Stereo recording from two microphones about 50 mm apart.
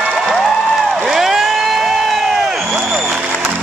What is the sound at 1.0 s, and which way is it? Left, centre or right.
Crowd, centre.